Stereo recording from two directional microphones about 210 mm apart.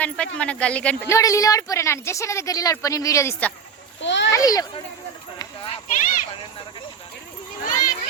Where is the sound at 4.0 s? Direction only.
60° left (ahead or behind).